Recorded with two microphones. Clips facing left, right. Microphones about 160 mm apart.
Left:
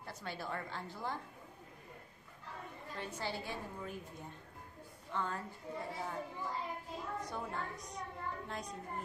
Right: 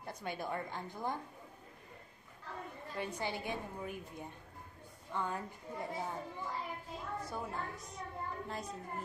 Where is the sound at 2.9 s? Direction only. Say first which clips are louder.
Right 3 dB; 15° right (ahead or behind).